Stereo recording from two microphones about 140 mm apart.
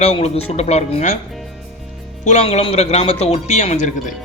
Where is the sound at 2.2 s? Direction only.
50° left (ahead or behind).